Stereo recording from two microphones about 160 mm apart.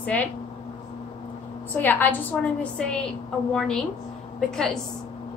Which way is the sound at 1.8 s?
10° left (ahead or behind).